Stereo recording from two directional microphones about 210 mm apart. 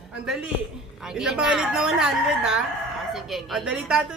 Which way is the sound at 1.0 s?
5° right (ahead or behind).